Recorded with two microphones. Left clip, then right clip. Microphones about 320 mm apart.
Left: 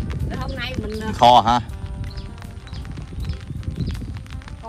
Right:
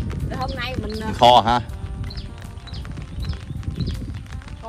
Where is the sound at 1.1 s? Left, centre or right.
Left.